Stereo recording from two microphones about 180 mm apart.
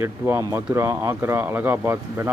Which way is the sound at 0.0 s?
10° right (ahead or behind).